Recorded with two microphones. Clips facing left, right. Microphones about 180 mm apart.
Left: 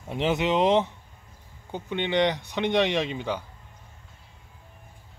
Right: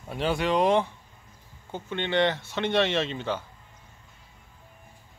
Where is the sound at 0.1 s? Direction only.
20° left (ahead or behind).